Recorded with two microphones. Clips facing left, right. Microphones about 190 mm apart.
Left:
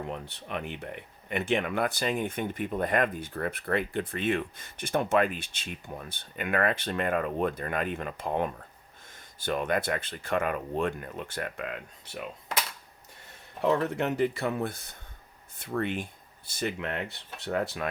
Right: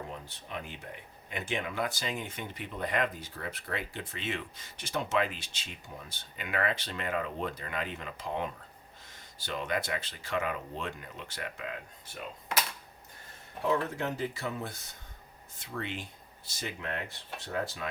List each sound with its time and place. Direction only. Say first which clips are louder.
0.1 s speech: left 6 dB; 65° left (ahead or behind)
13.6 s speech: left 4 dB; 65° left (ahead or behind)